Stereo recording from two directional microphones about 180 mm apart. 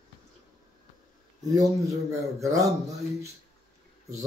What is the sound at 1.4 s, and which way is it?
Speech, 20° right (ahead or behind).